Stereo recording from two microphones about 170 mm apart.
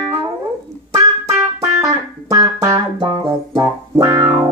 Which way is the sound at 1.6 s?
20° right (ahead or behind).